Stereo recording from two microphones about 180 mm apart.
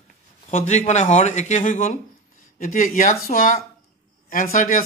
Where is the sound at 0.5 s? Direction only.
40° left (ahead or behind).